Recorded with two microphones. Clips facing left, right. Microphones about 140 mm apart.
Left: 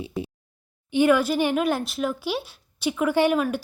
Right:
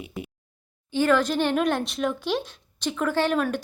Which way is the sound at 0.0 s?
30° left (ahead or behind).